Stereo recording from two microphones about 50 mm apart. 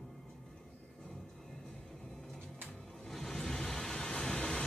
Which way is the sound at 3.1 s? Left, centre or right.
Centre.